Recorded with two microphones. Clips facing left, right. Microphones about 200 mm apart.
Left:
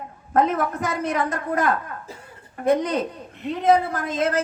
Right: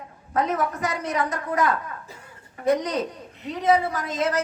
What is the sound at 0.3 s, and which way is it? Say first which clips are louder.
A man's voice: left 3 dB; 55° left (ahead or behind).